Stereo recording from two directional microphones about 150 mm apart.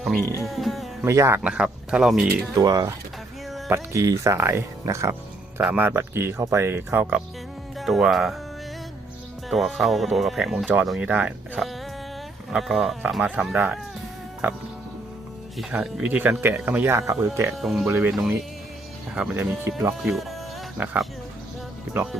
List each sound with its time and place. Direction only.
0.0 s speech: centre (ahead or behind)
0.4 s music: centre (ahead or behind)
1.0 s speech: 20° right (ahead or behind)
1.4 s speech: 5° right (ahead or behind)
2.6 s speech: 25° right (ahead or behind)
7.8 s speech: centre (ahead or behind)
9.5 s speech: centre (ahead or behind); by 17.5 s 20° right (ahead or behind)
17.6 s speech: centre (ahead or behind)
17.8 s speech: 15° right (ahead or behind)
19.1 s speech: 5° right (ahead or behind)
19.7 s speech: 20° right (ahead or behind)
20.0 s speech: centre (ahead or behind)